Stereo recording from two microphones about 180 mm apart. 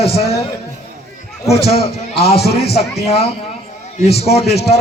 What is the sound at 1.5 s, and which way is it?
A man's voice, 35° left (ahead or behind).